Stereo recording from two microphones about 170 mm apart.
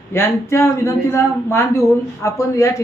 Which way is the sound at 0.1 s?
15° left (ahead or behind).